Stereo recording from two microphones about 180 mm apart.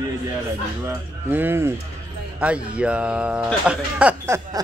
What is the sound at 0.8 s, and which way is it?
Speech, 10° right (ahead or behind).